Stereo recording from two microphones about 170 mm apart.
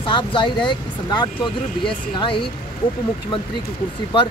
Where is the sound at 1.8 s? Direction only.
30° left (ahead or behind).